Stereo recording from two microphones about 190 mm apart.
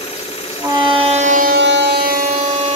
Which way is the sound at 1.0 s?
35° right (ahead or behind).